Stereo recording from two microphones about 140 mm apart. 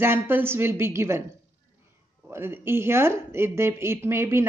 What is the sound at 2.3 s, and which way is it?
Speech, 15° right (ahead or behind).